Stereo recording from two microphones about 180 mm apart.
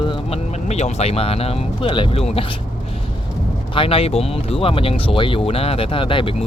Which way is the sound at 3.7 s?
30° left (ahead or behind).